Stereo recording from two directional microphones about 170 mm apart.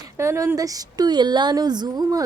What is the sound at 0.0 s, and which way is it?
Speech, 15° right (ahead or behind).